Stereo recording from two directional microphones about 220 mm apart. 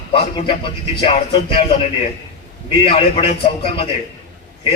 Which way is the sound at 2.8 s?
25° left (ahead or behind).